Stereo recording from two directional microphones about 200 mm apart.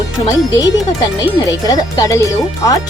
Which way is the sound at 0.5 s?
20° left (ahead or behind).